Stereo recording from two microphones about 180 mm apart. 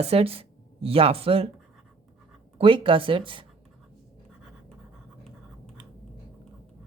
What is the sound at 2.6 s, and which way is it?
Speech, 30° right (ahead or behind).